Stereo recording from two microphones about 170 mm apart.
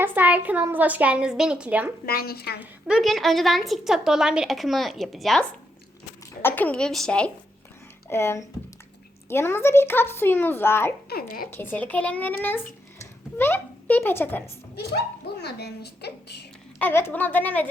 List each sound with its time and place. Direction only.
0.0 s a child's voice: 10° right (ahead or behind)
2.0 s a woman's voice: 65° left (ahead or behind)
2.6 s a woman's voice: 5° right (ahead or behind)
8.1 s speech: 15° left (ahead or behind)
11.1 s a woman's voice: 65° left (ahead or behind)
11.5 s speech: 10° left (ahead or behind)
14.8 s speech: 75° left (ahead or behind)
16.7 s speech: 10° left (ahead or behind)